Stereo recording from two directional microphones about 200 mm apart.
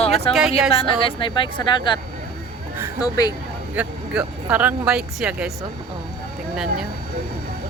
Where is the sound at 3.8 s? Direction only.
5° right (ahead or behind).